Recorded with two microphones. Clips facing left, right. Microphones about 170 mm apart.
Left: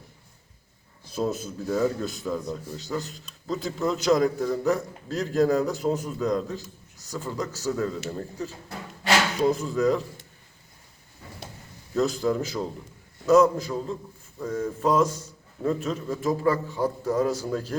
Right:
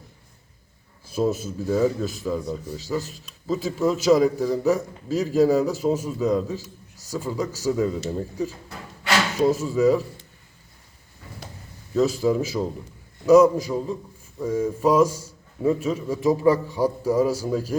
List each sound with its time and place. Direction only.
1.0 s a man's voice: 5° right (ahead or behind)
9.4 s a man's voice: 5° right (ahead or behind)
11.9 s a man's voice: 5° right (ahead or behind)